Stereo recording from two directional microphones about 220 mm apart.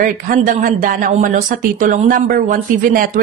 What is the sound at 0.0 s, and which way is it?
A woman's voice, 35° right (ahead or behind).